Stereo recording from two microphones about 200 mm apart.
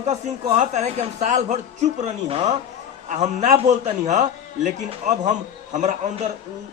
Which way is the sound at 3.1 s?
35° right (ahead or behind).